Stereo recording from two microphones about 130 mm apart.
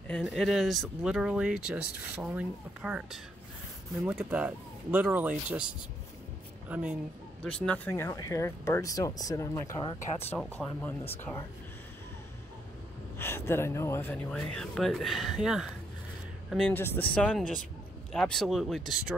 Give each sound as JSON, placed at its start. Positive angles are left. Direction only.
{"t": 0.1, "sound": "speech", "side_deg": 0}
{"t": 4.2, "sound": "speech", "side_deg": -15}
{"t": 7.4, "sound": "speech", "side_deg": 10}
{"t": 7.9, "sound": "speech", "side_deg": 20}
{"t": 10.3, "sound": "speech", "side_deg": 5}
{"t": 13.2, "sound": "speech", "side_deg": 20}
{"t": 14.3, "sound": "speech", "side_deg": 5}
{"t": 16.5, "sound": "speech", "side_deg": 10}